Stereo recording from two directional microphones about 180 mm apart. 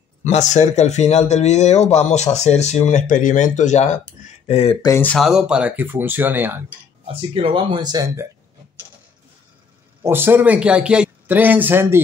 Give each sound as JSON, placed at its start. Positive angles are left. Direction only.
{"t": 0.2, "sound": "a man's voice", "side_deg": 40}
{"t": 4.8, "sound": "speech", "side_deg": 10}
{"t": 7.1, "sound": "speech", "side_deg": -30}
{"t": 10.0, "sound": "speech", "side_deg": -10}